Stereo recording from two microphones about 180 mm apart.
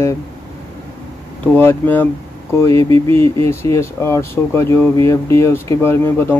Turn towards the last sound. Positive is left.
turn(degrees=15)  # may be behind; listen again after turning